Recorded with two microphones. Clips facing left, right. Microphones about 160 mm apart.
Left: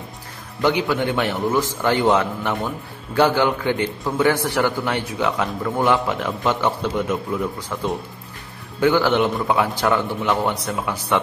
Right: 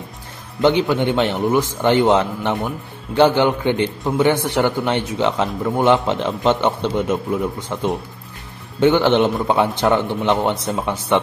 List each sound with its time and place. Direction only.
0.6 s a man's voice: 25° right (ahead or behind)